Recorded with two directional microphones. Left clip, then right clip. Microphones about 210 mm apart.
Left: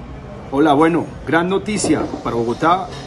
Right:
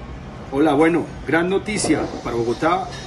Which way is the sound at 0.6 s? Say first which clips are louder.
Left 3 dB; 10° left (ahead or behind).